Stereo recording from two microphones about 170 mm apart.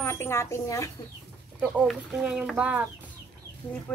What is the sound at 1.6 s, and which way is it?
Speech, 5° right (ahead or behind).